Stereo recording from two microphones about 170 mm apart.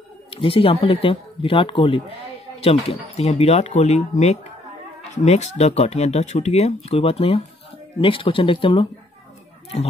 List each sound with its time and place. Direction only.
0.3 s speech: 30° left (ahead or behind)